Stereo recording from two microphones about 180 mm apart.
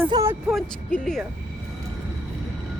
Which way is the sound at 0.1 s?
15° right (ahead or behind).